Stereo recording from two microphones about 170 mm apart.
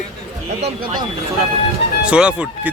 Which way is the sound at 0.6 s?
40° right (ahead or behind).